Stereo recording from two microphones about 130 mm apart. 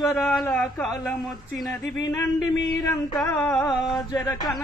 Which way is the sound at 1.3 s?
Centre (ahead or behind).